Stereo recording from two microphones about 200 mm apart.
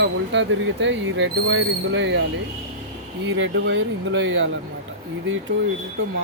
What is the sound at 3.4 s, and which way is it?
Speech, 65° right (ahead or behind).